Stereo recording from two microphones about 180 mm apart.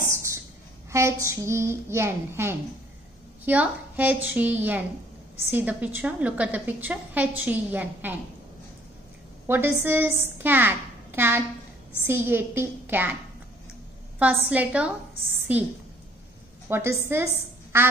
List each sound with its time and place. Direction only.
0.0 s a sound: 15° right (ahead or behind)
0.9 s a woman's voice: 15° right (ahead or behind)
9.5 s a woman's voice: 10° right (ahead or behind)
14.1 s a woman's voice: 10° right (ahead or behind)